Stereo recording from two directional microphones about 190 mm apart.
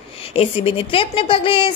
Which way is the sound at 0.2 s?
30° left (ahead or behind).